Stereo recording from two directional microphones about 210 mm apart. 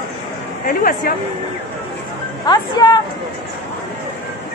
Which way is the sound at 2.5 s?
20° left (ahead or behind).